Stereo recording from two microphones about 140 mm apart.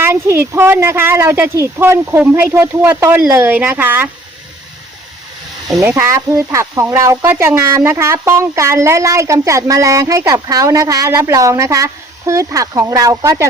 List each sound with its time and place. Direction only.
0.0 s speech: 15° right (ahead or behind)
5.8 s a woman's voice: 20° right (ahead or behind)